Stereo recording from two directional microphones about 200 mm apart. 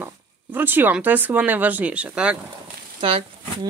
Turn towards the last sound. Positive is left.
turn(degrees=-25)  # may be behind; listen again after turning